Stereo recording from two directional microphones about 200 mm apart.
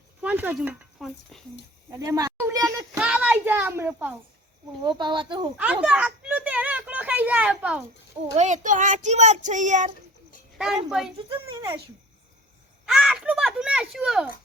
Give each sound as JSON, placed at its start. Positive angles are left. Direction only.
{"t": 0.2, "sound": "speech", "side_deg": -10}
{"t": 1.9, "sound": "a sound", "side_deg": -15}
{"t": 4.8, "sound": "speech", "side_deg": -20}
{"t": 5.5, "sound": "a child's voice", "side_deg": -5}
{"t": 8.4, "sound": "a child's voice", "side_deg": -35}
{"t": 10.6, "sound": "a woman's voice", "side_deg": 0}
{"t": 12.8, "sound": "a sound", "side_deg": 0}